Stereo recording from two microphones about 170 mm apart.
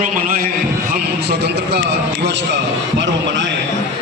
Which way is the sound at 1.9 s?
90° right.